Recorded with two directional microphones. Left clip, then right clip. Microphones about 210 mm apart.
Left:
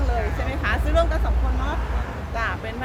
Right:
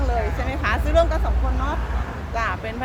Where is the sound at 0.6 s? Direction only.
30° right (ahead or behind).